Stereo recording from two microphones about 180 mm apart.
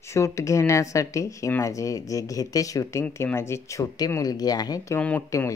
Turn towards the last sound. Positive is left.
turn(degrees=15)  # may be behind; listen again after turning